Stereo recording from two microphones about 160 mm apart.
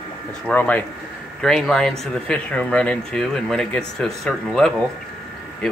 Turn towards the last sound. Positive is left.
turn(degrees=5)  # may be behind; listen again after turning